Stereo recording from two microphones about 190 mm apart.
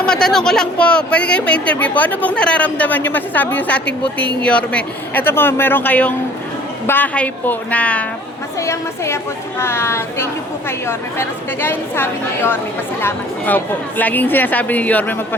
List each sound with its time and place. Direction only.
0.0 s speech: 5° left (ahead or behind)